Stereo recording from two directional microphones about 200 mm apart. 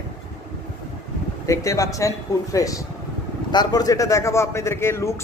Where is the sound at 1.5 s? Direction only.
15° left (ahead or behind).